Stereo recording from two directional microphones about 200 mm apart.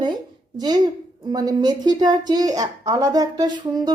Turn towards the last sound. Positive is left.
turn(degrees=-20)  # may be behind; listen again after turning